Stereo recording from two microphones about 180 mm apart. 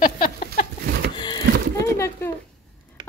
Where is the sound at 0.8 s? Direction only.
60° right (ahead or behind).